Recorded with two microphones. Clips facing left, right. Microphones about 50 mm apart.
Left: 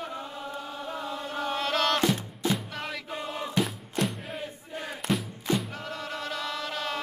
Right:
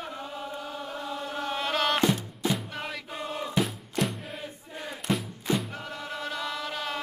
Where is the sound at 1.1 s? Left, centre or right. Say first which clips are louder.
Even; centre.